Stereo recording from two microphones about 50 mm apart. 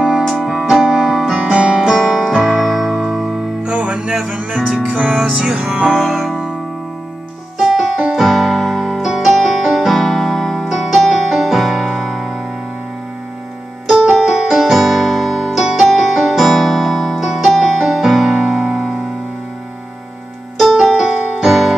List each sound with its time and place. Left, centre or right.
0.3 s keyboard: centre
1.4 s music: centre
1.8 s music: centre; by 6.0 s right
6.0 s music: centre
7.5 s piano: centre
13.9 s keyboard: centre
17.3 s music: centre
17.6 s music: centre
20.5 s keyboard: centre